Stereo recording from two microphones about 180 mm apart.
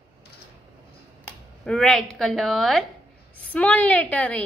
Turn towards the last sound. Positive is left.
turn(degrees=10)  # may be behind; listen again after turning